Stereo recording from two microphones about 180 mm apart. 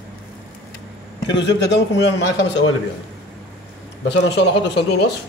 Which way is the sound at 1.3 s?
75° left (ahead or behind).